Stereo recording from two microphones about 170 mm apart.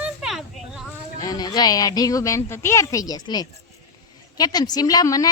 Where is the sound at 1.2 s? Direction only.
25° left (ahead or behind).